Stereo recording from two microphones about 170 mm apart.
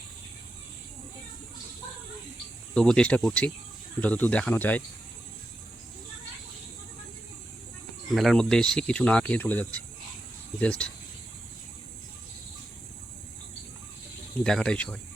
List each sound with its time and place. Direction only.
2.7 s speech: 5° left (ahead or behind)
8.1 s speech: centre (ahead or behind)
14.3 s speech: 5° left (ahead or behind)